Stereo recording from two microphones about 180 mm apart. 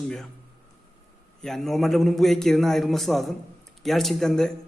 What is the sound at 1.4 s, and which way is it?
A man's voice, centre (ahead or behind).